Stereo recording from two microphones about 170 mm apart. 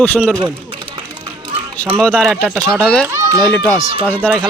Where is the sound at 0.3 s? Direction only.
25° right (ahead or behind).